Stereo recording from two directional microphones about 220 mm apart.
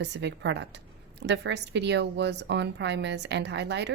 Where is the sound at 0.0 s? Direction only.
50° right (ahead or behind).